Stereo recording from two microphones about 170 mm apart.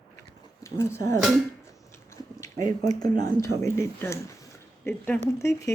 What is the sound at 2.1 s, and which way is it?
Biting, 15° left (ahead or behind).